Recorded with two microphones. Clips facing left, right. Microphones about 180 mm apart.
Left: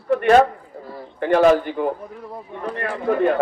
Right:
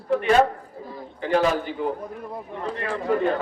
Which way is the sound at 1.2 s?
60° left (ahead or behind).